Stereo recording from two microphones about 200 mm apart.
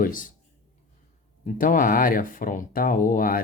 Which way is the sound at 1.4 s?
45° left (ahead or behind).